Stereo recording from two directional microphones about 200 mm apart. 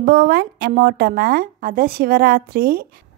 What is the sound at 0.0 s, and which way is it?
A woman's voice, 50° right (ahead or behind).